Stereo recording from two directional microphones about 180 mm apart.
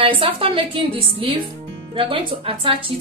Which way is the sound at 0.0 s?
30° right (ahead or behind).